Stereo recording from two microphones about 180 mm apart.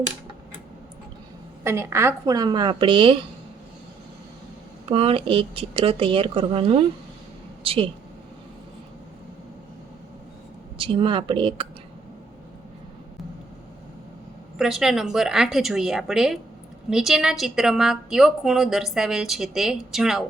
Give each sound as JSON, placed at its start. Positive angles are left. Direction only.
{"t": 1.6, "sound": "a woman's voice", "side_deg": -15}
{"t": 4.9, "sound": "speech", "side_deg": -30}
{"t": 10.8, "sound": "a woman's voice", "side_deg": -30}
{"t": 14.6, "sound": "a woman's voice", "side_deg": 0}